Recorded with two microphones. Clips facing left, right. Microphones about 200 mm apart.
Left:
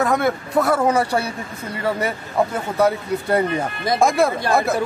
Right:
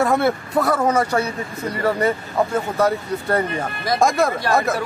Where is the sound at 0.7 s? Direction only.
10° left (ahead or behind).